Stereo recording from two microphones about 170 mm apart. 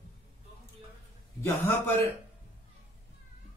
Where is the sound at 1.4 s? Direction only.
10° left (ahead or behind).